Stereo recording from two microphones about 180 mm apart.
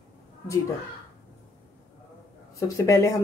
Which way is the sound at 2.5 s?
15° left (ahead or behind).